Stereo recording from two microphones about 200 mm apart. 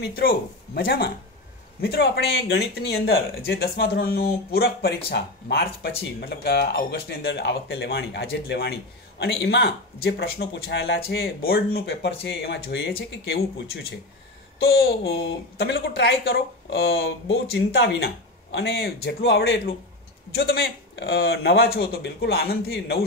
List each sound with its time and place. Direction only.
0.0 s a woman's voice: 50° left (ahead or behind)